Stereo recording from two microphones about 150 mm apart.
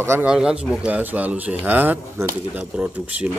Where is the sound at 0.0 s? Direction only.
15° right (ahead or behind).